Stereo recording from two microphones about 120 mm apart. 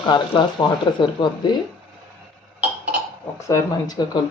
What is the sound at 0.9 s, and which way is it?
Speech, 40° left (ahead or behind).